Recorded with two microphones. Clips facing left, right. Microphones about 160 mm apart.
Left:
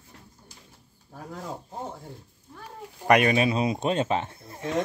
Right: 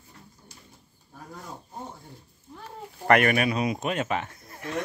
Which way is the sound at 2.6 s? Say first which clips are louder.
Right 1 dB; 15° left (ahead or behind).